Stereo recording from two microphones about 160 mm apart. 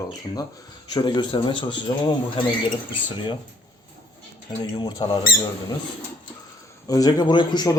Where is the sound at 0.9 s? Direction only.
30° left (ahead or behind).